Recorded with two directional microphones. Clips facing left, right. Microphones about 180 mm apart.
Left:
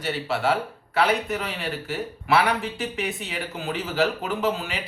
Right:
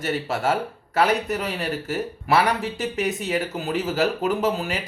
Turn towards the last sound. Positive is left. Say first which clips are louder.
# right 3 dB
turn(degrees=-40)  # may be behind; listen again after turning